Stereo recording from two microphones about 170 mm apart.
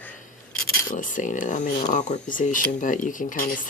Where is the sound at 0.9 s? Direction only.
50° left (ahead or behind).